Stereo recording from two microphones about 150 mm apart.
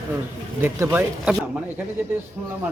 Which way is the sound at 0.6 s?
15° right (ahead or behind).